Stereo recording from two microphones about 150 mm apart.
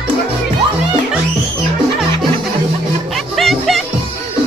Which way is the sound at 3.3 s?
Centre (ahead or behind).